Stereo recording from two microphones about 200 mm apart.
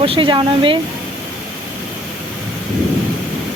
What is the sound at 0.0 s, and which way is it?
Speech, 25° right (ahead or behind).